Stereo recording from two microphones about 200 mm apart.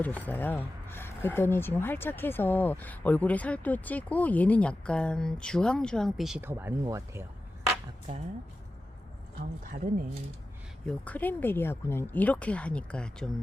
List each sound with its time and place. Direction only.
0.0 s speech: 10° left (ahead or behind); by 7.3 s 15° right (ahead or behind)
9.4 s speech: 45° right (ahead or behind)
10.8 s speech: 5° left (ahead or behind)